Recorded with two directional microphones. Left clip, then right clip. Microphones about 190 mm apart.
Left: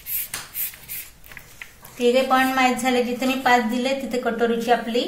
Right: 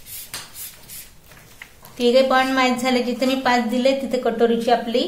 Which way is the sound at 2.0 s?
40° right (ahead or behind).